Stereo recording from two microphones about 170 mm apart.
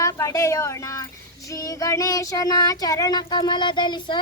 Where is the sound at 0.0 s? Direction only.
20° left (ahead or behind).